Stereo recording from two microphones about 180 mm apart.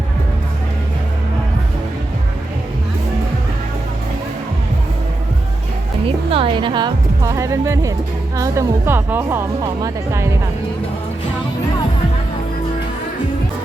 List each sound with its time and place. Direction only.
6.3 s a woman's voice: 30° right (ahead or behind)